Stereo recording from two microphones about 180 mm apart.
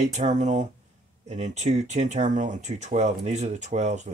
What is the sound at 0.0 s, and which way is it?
Speech, 40° right (ahead or behind).